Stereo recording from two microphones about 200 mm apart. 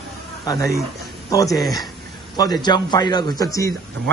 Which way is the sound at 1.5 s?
Centre (ahead or behind).